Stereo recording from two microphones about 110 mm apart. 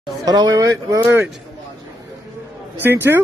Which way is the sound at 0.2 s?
40° right (ahead or behind).